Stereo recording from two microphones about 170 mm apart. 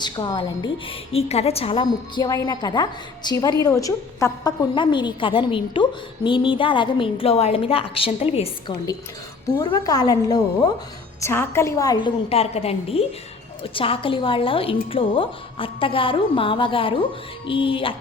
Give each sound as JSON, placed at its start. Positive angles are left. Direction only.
{"t": 0.0, "sound": "a woman's voice", "side_deg": 25}
{"t": 9.6, "sound": "a woman's voice", "side_deg": 20}
{"t": 12.3, "sound": "a woman's voice", "side_deg": 35}